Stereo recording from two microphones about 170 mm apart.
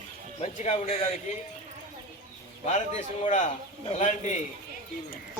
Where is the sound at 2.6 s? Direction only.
45° left (ahead or behind).